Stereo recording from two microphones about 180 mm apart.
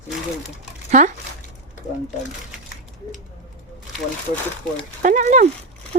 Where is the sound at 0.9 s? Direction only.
40° right (ahead or behind).